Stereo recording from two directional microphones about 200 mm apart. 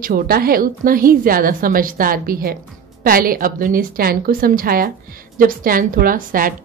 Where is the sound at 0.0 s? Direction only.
45° right (ahead or behind).